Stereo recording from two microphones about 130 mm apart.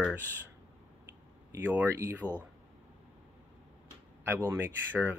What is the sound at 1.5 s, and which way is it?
Speech, 15° right (ahead or behind).